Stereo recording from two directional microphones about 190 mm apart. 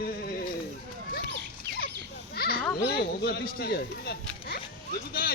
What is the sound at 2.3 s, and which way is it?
Children playing, 55° left (ahead or behind).